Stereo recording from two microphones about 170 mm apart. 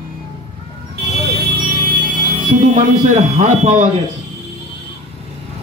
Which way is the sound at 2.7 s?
45° right (ahead or behind).